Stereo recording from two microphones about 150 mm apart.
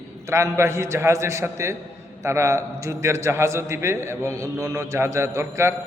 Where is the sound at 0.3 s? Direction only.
20° right (ahead or behind).